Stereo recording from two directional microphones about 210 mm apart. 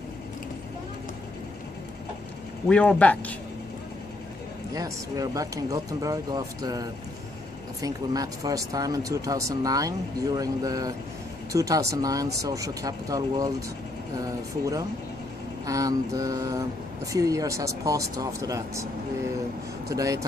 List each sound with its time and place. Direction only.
2.7 s speech: 5° left (ahead or behind)
4.7 s speech: 15° right (ahead or behind)
15.6 s speech: 15° right (ahead or behind)
19.9 s speech: 15° right (ahead or behind)